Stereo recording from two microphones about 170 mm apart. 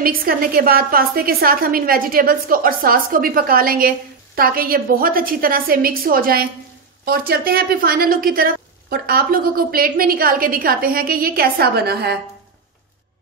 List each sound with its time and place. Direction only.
0.0 s a woman's voice: 60° right (ahead or behind)